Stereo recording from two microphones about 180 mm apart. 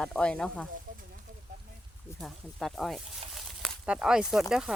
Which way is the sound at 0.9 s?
50° right (ahead or behind).